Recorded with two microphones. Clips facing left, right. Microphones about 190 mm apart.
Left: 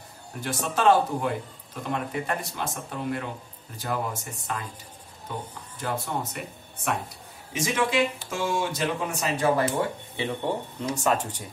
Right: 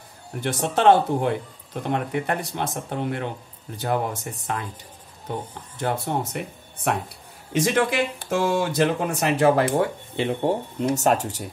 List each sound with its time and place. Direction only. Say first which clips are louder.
0.4 s speech: right 4 dB; 60° right (ahead or behind)
10.4 s speech: right 6 dB; 50° right (ahead or behind)